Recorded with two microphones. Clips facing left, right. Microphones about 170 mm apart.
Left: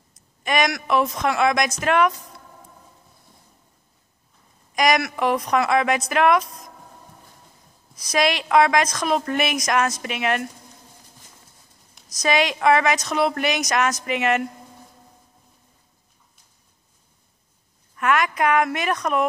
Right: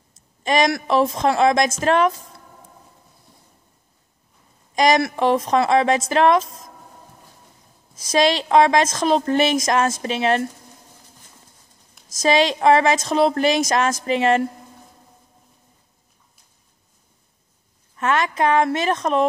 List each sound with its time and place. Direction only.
0.1 s a woman's voice: 30° right (ahead or behind)
4.7 s a woman's voice: 30° right (ahead or behind)
7.9 s a woman's voice: 25° right (ahead or behind)
12.2 s a woman's voice: 30° right (ahead or behind)
17.9 s a woman's voice: 25° right (ahead or behind)